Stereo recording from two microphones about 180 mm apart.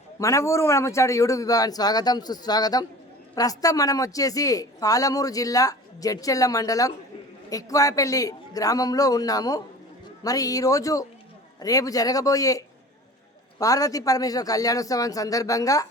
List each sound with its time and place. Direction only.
0.2 s a woman's voice: 15° left (ahead or behind)